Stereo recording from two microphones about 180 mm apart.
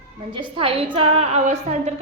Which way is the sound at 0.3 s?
25° right (ahead or behind).